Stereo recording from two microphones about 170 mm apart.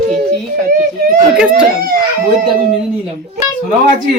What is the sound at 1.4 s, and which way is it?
Speech, 5° right (ahead or behind).